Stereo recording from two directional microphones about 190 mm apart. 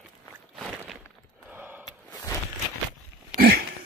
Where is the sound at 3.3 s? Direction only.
55° right (ahead or behind).